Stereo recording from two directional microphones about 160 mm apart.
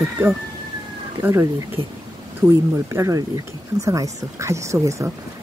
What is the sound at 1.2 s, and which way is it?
Speech, 20° right (ahead or behind).